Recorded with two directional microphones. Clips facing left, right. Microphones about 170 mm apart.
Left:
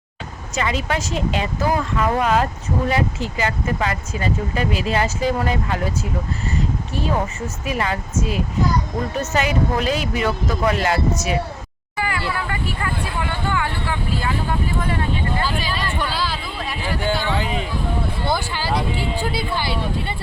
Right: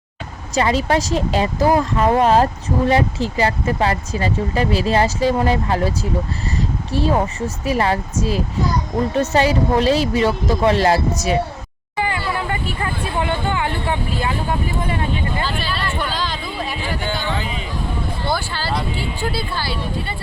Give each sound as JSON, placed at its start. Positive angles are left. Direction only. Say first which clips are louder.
{"t": 0.5, "sound": "speech", "louder": "right 6 dB", "side_deg": -35}
{"t": 11.9, "sound": "vehicle", "louder": "right 2 dB", "side_deg": -25}
{"t": 15.4, "sound": "a sound", "louder": "even", "side_deg": 15}
{"t": 18.3, "sound": "speech", "louder": "even", "side_deg": 15}